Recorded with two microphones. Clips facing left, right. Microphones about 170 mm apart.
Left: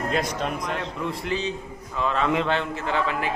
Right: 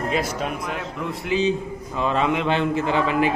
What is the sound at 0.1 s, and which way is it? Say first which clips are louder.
Speech: right 1 dB; 5° right (ahead or behind).